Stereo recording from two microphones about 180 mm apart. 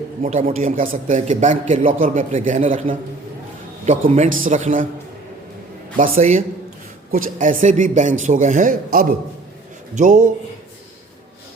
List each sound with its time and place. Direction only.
0.2 s a man's voice: 45° right (ahead or behind)
6.0 s a man's voice: 40° right (ahead or behind)